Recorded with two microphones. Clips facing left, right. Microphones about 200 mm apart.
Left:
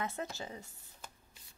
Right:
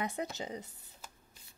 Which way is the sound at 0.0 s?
15° right (ahead or behind).